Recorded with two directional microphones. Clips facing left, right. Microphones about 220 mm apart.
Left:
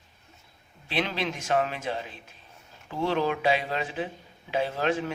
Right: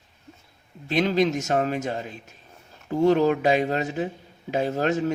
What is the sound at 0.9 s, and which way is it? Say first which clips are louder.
A man's voice: right 8 dB; 45° right (ahead or behind).